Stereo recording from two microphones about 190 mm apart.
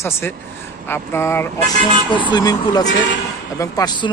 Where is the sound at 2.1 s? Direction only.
25° left (ahead or behind).